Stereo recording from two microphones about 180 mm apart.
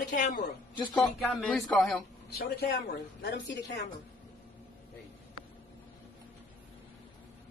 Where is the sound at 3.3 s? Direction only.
80° left.